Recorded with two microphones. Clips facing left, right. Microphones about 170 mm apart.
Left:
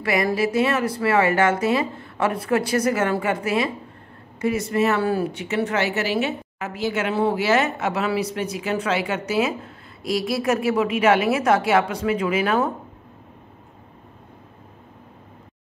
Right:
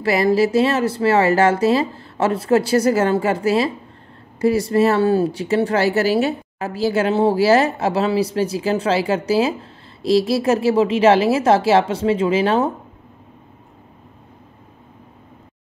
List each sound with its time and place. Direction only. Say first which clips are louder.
0.0 s speech: right 5 dB; 30° right (ahead or behind)